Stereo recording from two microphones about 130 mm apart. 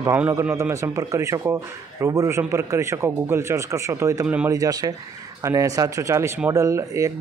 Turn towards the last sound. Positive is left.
turn(degrees=-25)  # may be behind; listen again after turning